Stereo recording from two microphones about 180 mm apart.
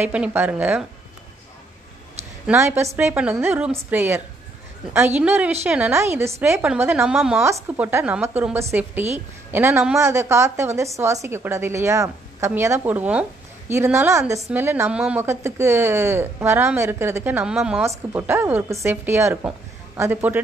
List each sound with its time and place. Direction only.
0.0 s a woman's voice: 10° right (ahead or behind)
2.4 s a woman's voice: 15° right (ahead or behind)